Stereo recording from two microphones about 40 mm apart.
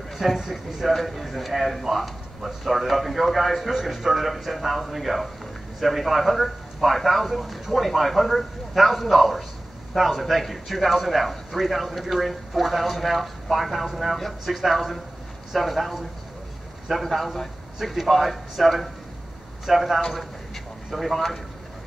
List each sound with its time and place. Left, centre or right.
0.4 s speech: centre
17.0 s a man's voice: centre